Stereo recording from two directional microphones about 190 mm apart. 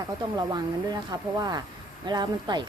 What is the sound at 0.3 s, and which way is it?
Speech, 20° right (ahead or behind).